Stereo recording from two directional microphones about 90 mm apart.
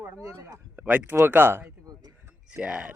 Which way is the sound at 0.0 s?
30° right (ahead or behind).